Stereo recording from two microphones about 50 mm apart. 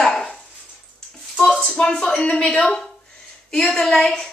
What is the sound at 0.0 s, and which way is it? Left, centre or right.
Dog, centre.